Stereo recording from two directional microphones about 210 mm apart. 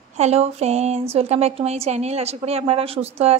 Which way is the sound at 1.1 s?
30° right (ahead or behind).